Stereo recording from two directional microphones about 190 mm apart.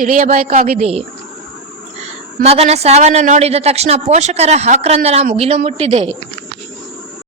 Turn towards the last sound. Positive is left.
turn(degrees=-35)  # may be behind; listen again after turning